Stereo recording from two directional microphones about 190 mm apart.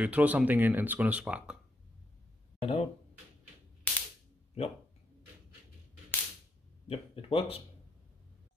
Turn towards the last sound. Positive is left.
turn(degrees=30)  # may be behind; listen again after turning